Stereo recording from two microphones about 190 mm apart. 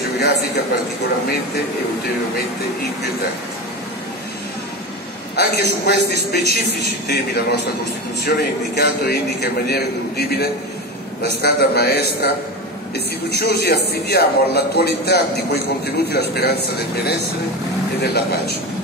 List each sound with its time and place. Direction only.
5.3 s a man's voice: 60° left (ahead or behind)